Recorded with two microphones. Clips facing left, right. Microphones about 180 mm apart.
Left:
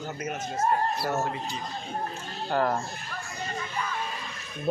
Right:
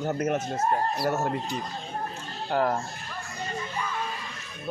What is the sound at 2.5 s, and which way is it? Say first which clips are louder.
Speech: right 1 dB; 10° right (ahead or behind).